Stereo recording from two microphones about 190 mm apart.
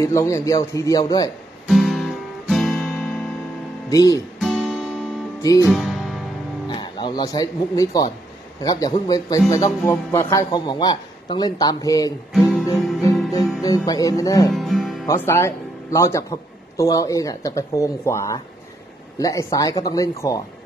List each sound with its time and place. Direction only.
0.0 s a man's voice: 15° left (ahead or behind)
1.7 s guitar: centre (ahead or behind)
3.9 s a man's voice: 20° left (ahead or behind)
4.4 s music: centre (ahead or behind)
5.4 s music: 20° left (ahead or behind)
5.7 s music: centre (ahead or behind)
6.7 s a man's voice: 25° left (ahead or behind)
12.3 s guitar: centre (ahead or behind)
13.3 s music: 20° left (ahead or behind)
14.5 s music: centre (ahead or behind)
15.0 s a man's voice: 15° left (ahead or behind)